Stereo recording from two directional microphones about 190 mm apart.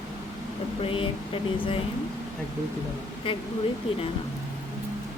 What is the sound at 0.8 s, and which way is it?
A woman's voice, 25° left (ahead or behind).